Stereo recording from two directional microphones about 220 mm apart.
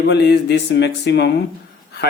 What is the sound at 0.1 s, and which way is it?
Speech, 50° left (ahead or behind).